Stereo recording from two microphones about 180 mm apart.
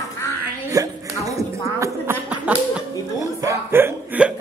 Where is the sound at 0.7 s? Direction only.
20° right (ahead or behind).